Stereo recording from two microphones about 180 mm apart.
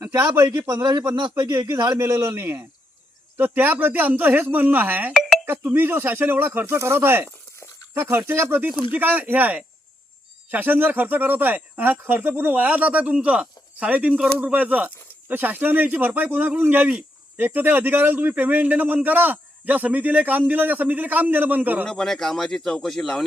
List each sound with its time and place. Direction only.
0.0 s a man's voice: 15° right (ahead or behind)
7.3 s a sound: 15° left (ahead or behind)
7.9 s speech: 15° right (ahead or behind)
21.8 s speech: centre (ahead or behind)